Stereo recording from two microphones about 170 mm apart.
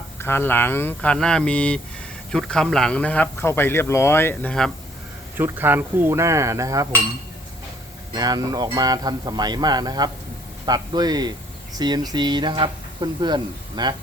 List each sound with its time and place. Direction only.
0.2 s speech: 15° left (ahead or behind)
5.4 s cutlery: 10° right (ahead or behind)
8.1 s speech: 25° right (ahead or behind)